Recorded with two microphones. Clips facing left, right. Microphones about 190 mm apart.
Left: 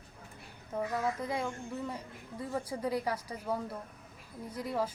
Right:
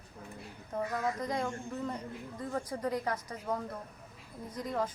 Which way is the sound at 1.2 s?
5° left (ahead or behind).